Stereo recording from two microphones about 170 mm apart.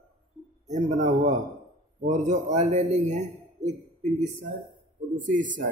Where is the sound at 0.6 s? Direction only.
45° right (ahead or behind).